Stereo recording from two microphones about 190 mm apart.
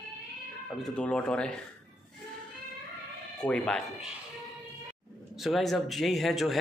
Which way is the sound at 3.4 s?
5° left (ahead or behind).